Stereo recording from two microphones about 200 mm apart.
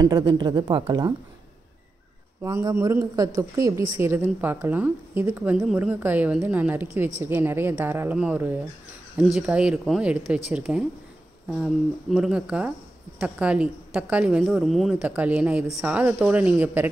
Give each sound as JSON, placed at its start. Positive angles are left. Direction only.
{"t": 0.0, "sound": "a woman's voice", "side_deg": -20}
{"t": 2.4, "sound": "a woman's voice", "side_deg": -15}